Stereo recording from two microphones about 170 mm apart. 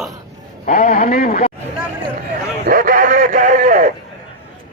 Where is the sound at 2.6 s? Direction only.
55° right (ahead or behind).